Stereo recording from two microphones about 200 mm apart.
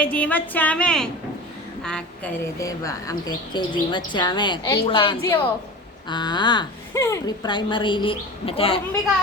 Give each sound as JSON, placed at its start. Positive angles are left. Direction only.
{"t": 0.0, "sound": "a woman's voice", "side_deg": 5}